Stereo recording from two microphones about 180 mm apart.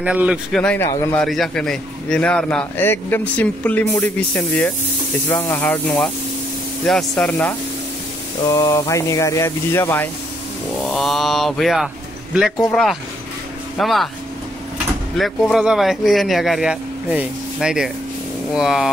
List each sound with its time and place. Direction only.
0.0 s a man's voice: 5° right (ahead or behind)
8.5 s a man's voice: 20° left (ahead or behind); by 11.9 s centre (ahead or behind)
13.7 s speech: centre (ahead or behind)
15.1 s speech: centre (ahead or behind)